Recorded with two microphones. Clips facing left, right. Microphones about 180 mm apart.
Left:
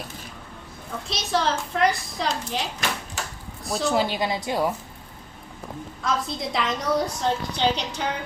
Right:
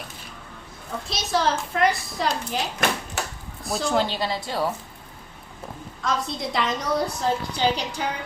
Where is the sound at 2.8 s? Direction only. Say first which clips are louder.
Right 8 dB; 55° right (ahead or behind).